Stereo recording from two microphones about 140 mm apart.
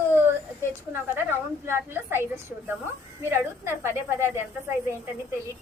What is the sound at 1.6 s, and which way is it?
Speech, 15° right (ahead or behind).